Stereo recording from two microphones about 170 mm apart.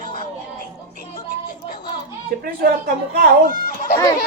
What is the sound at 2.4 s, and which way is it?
Speech, 65° right (ahead or behind).